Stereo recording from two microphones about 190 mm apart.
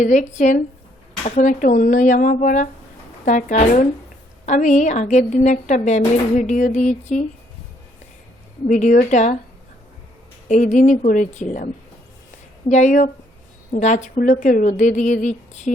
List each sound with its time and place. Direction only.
0.0 s speech: 40° left (ahead or behind)
8.7 s speech: 45° left (ahead or behind)
10.5 s speech: 40° left (ahead or behind)